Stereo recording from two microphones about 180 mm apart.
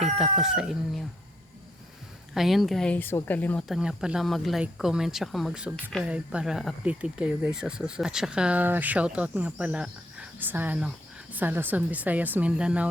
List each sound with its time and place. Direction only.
0.2 s speech: centre (ahead or behind)
2.3 s speech: centre (ahead or behind)
3.8 s speech: 5° right (ahead or behind)